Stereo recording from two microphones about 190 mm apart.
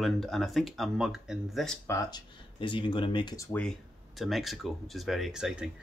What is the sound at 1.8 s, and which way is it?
Speech, 20° left (ahead or behind).